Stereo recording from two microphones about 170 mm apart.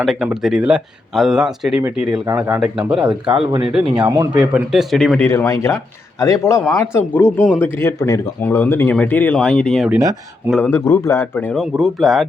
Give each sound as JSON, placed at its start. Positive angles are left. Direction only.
{"t": 0.0, "sound": "speech", "side_deg": 0}
{"t": 2.2, "sound": "speech", "side_deg": -15}
{"t": 2.6, "sound": "speech", "side_deg": -5}
{"t": 4.0, "sound": "speech", "side_deg": -20}
{"t": 4.4, "sound": "speech", "side_deg": -5}
{"t": 5.2, "sound": "speech", "side_deg": 15}
{"t": 9.9, "sound": "speech", "side_deg": -15}
{"t": 10.5, "sound": "speech", "side_deg": 10}